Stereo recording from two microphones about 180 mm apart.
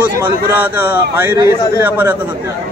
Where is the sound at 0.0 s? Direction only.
10° right (ahead or behind).